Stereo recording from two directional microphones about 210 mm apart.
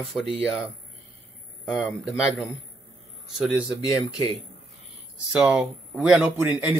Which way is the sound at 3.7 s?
20° left (ahead or behind).